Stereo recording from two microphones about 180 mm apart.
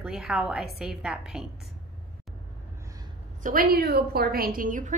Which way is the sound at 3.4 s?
55° right (ahead or behind).